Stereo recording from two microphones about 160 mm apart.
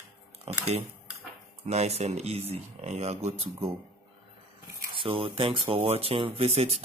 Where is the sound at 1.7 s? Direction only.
40° right (ahead or behind).